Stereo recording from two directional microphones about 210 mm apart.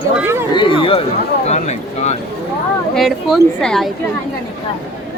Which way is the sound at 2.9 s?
Centre (ahead or behind).